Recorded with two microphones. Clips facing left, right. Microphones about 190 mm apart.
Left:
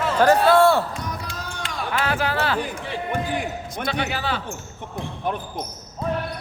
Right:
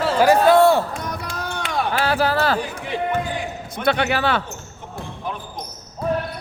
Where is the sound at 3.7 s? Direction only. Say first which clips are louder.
Right 7 dB; 65° right (ahead or behind).